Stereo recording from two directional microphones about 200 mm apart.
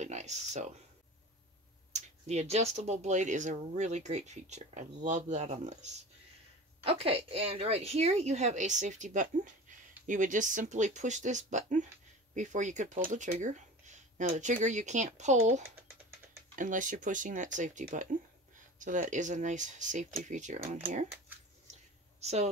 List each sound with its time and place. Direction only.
0.0 s a sound: 35° right (ahead or behind)
1.9 s a woman's voice: 35° right (ahead or behind)
22.2 s speech: 35° right (ahead or behind)